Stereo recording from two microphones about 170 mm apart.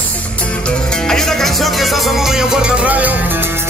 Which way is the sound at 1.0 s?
Centre (ahead or behind).